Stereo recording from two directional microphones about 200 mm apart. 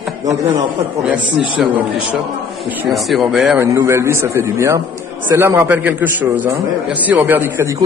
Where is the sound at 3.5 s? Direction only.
15° right (ahead or behind).